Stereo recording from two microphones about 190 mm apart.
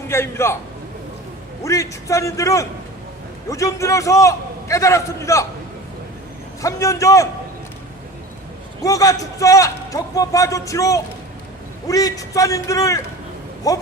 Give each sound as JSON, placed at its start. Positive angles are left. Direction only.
{"t": 0.1, "sound": "a man's voice", "side_deg": 15}
{"t": 1.6, "sound": "a man's voice", "side_deg": 15}
{"t": 6.6, "sound": "a man's voice", "side_deg": 15}
{"t": 8.8, "sound": "a man's voice", "side_deg": 15}